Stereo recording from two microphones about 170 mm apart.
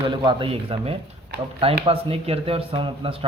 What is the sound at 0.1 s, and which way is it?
A man's voice, 25° right (ahead or behind).